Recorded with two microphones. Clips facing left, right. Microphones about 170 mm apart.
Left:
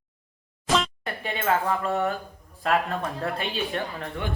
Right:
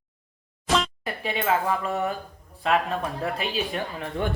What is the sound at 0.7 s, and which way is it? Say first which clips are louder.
Music: even; centre (ahead or behind).